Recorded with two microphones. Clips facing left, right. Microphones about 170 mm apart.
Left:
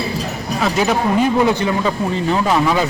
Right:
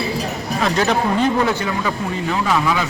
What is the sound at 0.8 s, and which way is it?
A man's voice, 10° left (ahead or behind).